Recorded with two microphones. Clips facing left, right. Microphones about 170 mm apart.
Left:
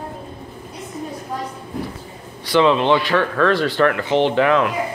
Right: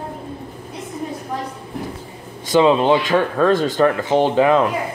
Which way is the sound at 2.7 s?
40° right (ahead or behind).